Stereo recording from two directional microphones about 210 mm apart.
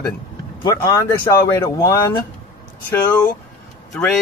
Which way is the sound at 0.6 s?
15° left (ahead or behind).